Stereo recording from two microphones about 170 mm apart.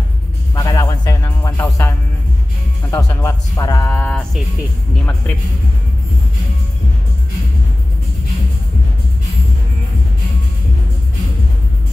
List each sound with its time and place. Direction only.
0.6 s music: 20° left (ahead or behind)
2.9 s speech: 15° left (ahead or behind)